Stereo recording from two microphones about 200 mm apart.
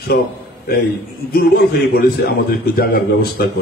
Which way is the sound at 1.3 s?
50° left (ahead or behind).